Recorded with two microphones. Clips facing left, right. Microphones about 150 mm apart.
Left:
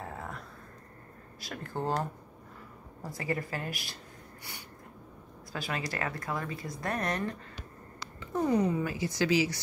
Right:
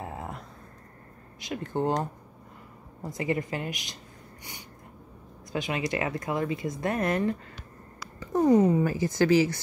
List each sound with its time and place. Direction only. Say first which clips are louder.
0.0 s a sound: right 3 dB; 25° right (ahead or behind)
1.4 s speech: right 6 dB; 20° right (ahead or behind)
5.5 s speech: right 6 dB; 20° right (ahead or behind)
8.2 s a sound: right 6 dB; 40° right (ahead or behind)
8.5 s speech: right 7 dB; 30° right (ahead or behind)
8.9 s speech: right 6 dB; 50° right (ahead or behind)